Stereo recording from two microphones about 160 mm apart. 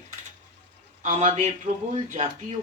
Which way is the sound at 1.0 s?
45° right (ahead or behind).